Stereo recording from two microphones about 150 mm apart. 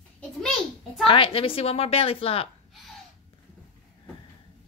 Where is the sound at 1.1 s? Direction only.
35° left (ahead or behind).